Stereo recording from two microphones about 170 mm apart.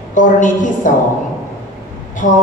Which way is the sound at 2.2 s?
50° left (ahead or behind).